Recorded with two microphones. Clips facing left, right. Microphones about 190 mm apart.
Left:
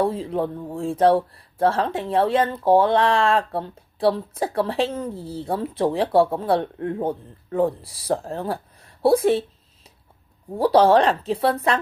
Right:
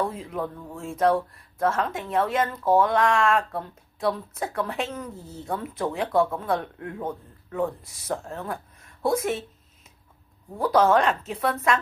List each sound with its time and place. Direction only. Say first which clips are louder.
0.0 s speech: left 6 dB; 30° left (ahead or behind)
10.5 s speech: left 4 dB; 30° left (ahead or behind)